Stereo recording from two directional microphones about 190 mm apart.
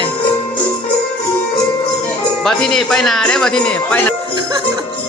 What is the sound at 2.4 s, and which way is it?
Speech, centre (ahead or behind).